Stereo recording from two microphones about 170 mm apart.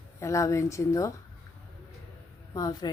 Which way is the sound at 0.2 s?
20° left (ahead or behind).